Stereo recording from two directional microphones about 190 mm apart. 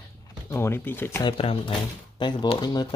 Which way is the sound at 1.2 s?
30° left (ahead or behind).